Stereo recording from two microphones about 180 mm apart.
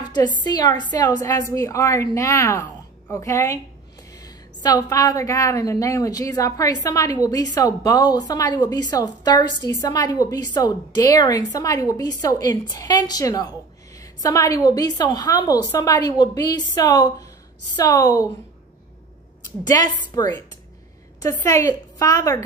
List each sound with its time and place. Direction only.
0.4 s a woman's voice: 20° left (ahead or behind)
19.6 s a woman's voice: 20° left (ahead or behind)